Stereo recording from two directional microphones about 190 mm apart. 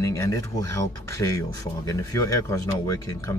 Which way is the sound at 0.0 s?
15° left (ahead or behind).